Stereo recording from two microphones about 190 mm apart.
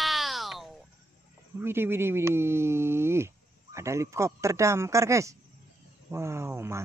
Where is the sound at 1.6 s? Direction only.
10° right (ahead or behind).